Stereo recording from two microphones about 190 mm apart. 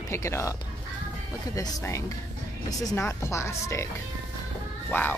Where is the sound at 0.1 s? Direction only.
15° left (ahead or behind).